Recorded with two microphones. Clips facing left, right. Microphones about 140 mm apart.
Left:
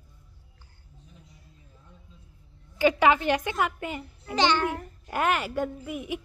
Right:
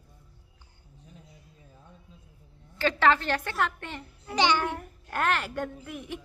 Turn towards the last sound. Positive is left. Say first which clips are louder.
# left 5 dB
turn(degrees=5)  # may be behind; listen again after turning